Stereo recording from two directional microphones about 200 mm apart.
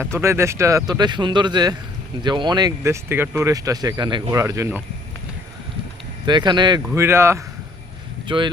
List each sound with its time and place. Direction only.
0.0 s speech: 15° right (ahead or behind)
6.2 s speech: 20° right (ahead or behind)
8.3 s speech: 25° right (ahead or behind)